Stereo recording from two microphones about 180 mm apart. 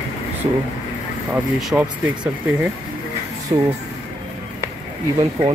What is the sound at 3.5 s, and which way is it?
Speech, 25° right (ahead or behind).